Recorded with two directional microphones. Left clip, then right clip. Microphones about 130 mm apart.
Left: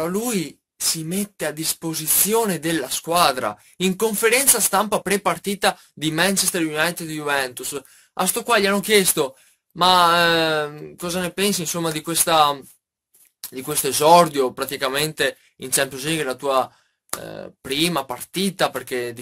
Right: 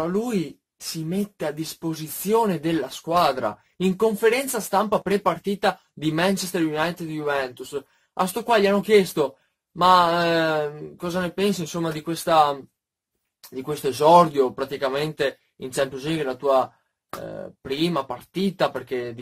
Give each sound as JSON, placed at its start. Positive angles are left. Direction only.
{"t": 1.0, "sound": "speech", "side_deg": 15}
{"t": 8.2, "sound": "speech", "side_deg": 5}